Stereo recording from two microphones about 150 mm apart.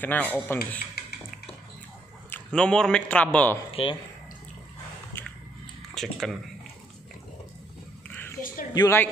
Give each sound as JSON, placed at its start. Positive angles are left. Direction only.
{"t": 0.0, "sound": "speech", "side_deg": 10}
{"t": 2.2, "sound": "a man's voice", "side_deg": 10}
{"t": 3.8, "sound": "speech", "side_deg": 40}
{"t": 6.0, "sound": "speech", "side_deg": 0}
{"t": 8.1, "sound": "a sound", "side_deg": 15}
{"t": 8.7, "sound": "speech", "side_deg": 15}